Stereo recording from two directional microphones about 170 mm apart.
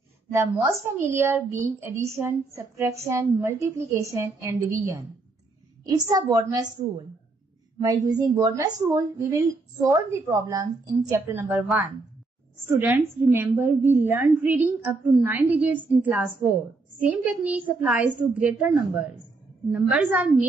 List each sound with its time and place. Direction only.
0.3 s a woman's voice: 15° right (ahead or behind)
7.8 s a woman's voice: 20° right (ahead or behind)
12.6 s a woman's voice: 15° right (ahead or behind)